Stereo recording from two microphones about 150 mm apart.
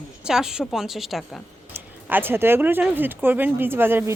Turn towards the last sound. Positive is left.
turn(degrees=-15)  # may be behind; listen again after turning